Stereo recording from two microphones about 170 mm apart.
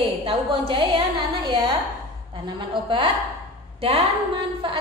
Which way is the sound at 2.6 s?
30° right (ahead or behind).